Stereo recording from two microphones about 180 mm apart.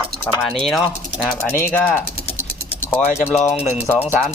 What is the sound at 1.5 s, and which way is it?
Speech, 10° left (ahead or behind).